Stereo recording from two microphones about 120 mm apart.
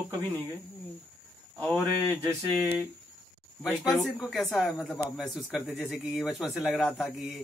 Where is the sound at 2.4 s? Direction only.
Centre (ahead or behind).